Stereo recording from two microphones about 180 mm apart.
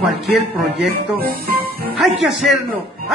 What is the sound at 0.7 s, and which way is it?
Speech, 55° right (ahead or behind).